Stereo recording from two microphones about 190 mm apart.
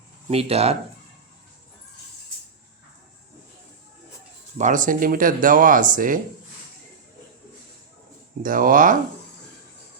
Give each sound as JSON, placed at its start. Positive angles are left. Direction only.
{"t": 0.3, "sound": "speech", "side_deg": -30}
{"t": 4.5, "sound": "speech", "side_deg": -40}
{"t": 8.4, "sound": "speech", "side_deg": -45}